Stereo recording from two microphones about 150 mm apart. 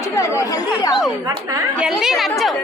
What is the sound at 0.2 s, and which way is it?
Speech, 20° left (ahead or behind).